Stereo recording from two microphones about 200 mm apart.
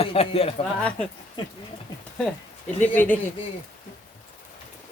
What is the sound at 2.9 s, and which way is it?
Speech, 10° left (ahead or behind).